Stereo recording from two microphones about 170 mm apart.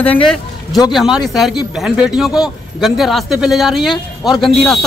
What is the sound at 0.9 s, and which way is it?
A man's voice, centre (ahead or behind).